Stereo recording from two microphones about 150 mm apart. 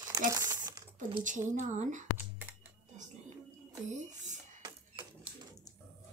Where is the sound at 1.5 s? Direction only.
55° right (ahead or behind).